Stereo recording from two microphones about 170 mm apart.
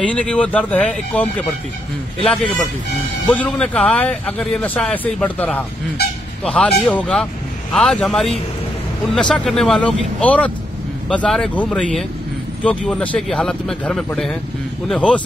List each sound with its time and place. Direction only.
0.0 s speech: 5° left (ahead or behind)